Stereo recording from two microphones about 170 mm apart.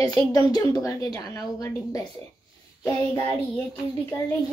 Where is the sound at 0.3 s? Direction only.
20° left (ahead or behind).